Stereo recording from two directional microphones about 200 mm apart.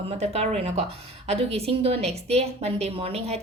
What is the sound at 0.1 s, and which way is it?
A woman's voice, 35° right (ahead or behind).